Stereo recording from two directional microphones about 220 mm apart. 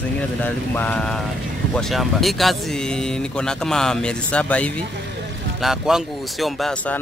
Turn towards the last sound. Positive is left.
turn(degrees=0)  # may be behind; listen again after turning